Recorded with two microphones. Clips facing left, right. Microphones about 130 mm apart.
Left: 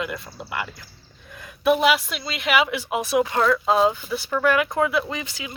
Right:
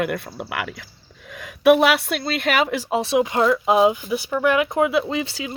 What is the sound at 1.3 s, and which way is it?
A woman's voice, 85° right.